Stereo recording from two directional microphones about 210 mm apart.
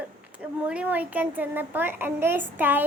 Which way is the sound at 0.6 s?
5° right (ahead or behind).